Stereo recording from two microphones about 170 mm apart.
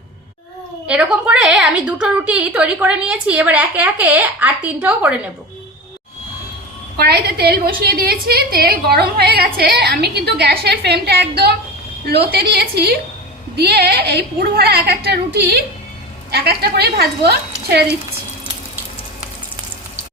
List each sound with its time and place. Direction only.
0.9 s a woman's voice: 5° right (ahead or behind)
7.0 s a woman's voice: 70° right (ahead or behind)